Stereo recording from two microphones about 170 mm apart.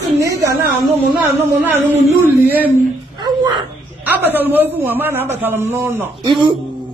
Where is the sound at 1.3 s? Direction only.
10° right (ahead or behind).